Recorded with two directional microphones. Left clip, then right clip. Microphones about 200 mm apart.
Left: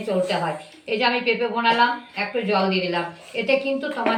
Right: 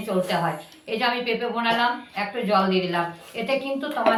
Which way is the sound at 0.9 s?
20° right (ahead or behind).